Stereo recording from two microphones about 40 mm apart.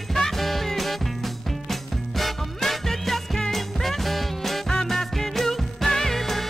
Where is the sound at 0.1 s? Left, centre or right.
Centre.